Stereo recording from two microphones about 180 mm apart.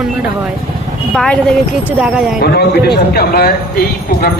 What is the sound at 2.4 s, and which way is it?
Speech, 60° left (ahead or behind).